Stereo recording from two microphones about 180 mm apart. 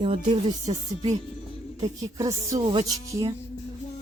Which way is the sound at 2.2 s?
20° right (ahead or behind).